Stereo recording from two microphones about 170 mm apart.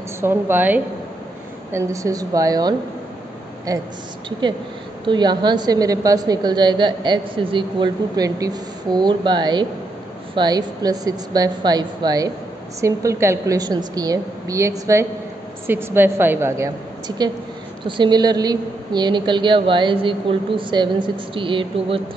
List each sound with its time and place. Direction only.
0.2 s a woman's voice: 15° right (ahead or behind)
5.0 s a woman's voice: 25° right (ahead or behind)
17.8 s a woman's voice: 25° right (ahead or behind)